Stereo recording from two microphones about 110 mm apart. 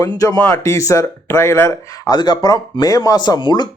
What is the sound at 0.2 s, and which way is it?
Speech, 30° left (ahead or behind).